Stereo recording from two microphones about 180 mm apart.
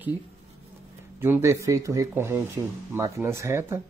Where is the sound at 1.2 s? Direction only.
15° right (ahead or behind).